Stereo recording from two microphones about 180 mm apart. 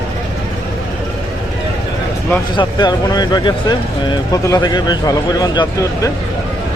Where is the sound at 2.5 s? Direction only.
25° left (ahead or behind).